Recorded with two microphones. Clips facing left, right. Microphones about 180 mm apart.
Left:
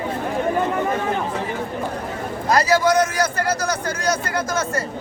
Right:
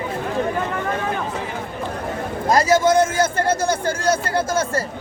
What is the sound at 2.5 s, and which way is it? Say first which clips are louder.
A man's voice: right 1 dB; 25° right (ahead or behind).